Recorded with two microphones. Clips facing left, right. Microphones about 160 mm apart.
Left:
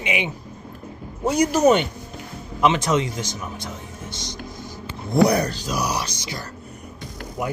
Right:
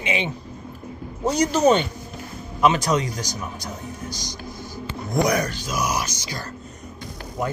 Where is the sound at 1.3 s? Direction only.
10° left (ahead or behind).